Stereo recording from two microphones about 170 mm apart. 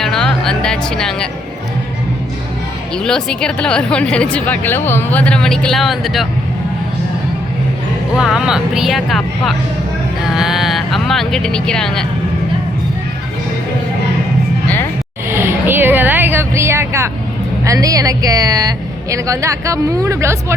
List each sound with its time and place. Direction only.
0.0 s music: 5° left (ahead or behind)
2.9 s speech: 5° left (ahead or behind)
8.1 s speech: 5° right (ahead or behind)
15.3 s a sound: 15° right (ahead or behind)
17.7 s a woman's voice: 20° right (ahead or behind)